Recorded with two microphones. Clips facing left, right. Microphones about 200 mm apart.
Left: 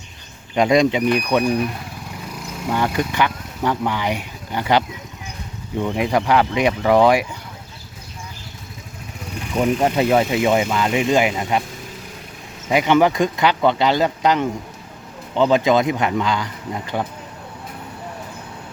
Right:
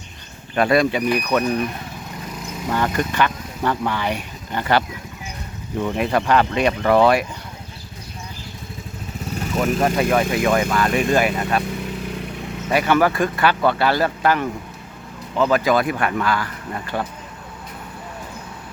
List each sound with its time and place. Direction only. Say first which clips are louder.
0.5 s speech: left 2 dB; 15° left (ahead or behind)
5.8 s speech: left 1 dB; 10° left (ahead or behind)
9.8 s speech: left 1 dB; 25° left (ahead or behind)
12.6 s speech: left 2 dB; 15° left (ahead or behind)